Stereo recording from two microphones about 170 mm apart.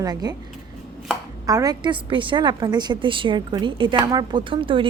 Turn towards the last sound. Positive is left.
turn(degrees=-30)  # may be behind; listen again after turning